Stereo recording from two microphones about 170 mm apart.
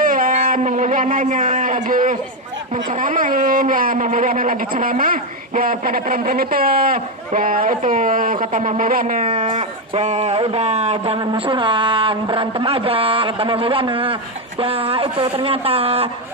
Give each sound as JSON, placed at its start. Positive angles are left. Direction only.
{"t": 0.0, "sound": "speech", "side_deg": -55}